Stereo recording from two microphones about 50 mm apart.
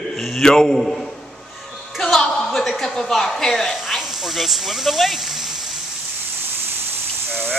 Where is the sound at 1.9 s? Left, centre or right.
Centre.